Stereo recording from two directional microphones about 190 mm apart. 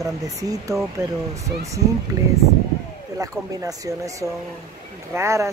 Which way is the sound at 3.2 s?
20° right (ahead or behind).